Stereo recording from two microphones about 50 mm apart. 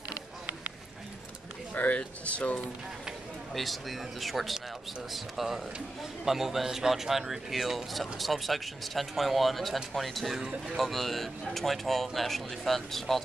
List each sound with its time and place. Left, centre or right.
0.1 s a sound: right
1.7 s speech: left
3.5 s speech: centre
10.4 s speech: right
10.8 s speech: centre